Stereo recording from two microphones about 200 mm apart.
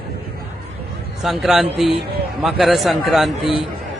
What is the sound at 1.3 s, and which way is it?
A man's voice, centre (ahead or behind).